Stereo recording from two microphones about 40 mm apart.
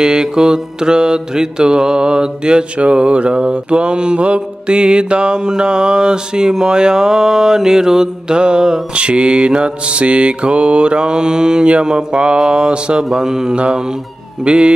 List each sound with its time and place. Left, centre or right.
0.0 s mantra: centre
13.2 s mantra: centre